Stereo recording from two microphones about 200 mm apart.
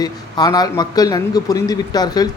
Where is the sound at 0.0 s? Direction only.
20° left (ahead or behind).